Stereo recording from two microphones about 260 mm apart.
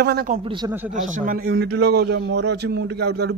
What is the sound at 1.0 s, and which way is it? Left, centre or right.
Speech, right.